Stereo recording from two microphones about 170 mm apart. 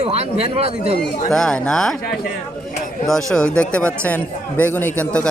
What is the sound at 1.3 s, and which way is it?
Speech, 5° left (ahead or behind).